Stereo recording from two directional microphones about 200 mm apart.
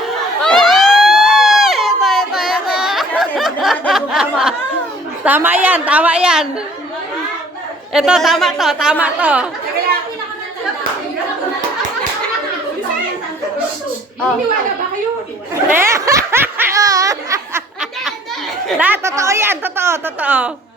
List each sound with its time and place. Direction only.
0.1 s crowd: centre (ahead or behind)
5.2 s a woman's voice: 10° right (ahead or behind)
7.9 s a woman's voice: 5° right (ahead or behind)
15.7 s laughter: 15° right (ahead or behind)
18.7 s a woman's voice: 10° right (ahead or behind)